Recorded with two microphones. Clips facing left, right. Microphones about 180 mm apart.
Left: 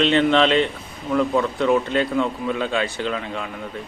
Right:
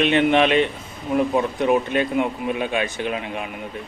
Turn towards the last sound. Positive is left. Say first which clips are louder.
# even
turn(degrees=-20)  # may be behind; listen again after turning